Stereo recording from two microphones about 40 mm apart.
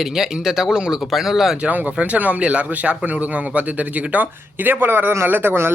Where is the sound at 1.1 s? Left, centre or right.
Centre.